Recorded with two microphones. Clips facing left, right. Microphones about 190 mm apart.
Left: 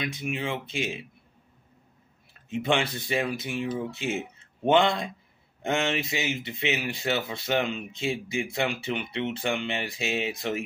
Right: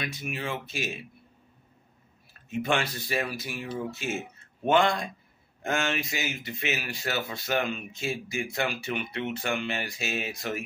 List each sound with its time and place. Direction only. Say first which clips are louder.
0.0 s speech: left 3 dB; 20° left (ahead or behind)
2.5 s speech: left 2 dB; 20° left (ahead or behind)